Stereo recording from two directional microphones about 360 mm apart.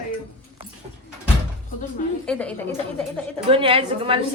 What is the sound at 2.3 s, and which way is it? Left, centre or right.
Speech, centre.